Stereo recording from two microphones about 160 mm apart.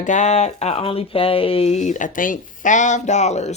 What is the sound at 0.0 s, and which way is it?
Speech, 50° left (ahead or behind).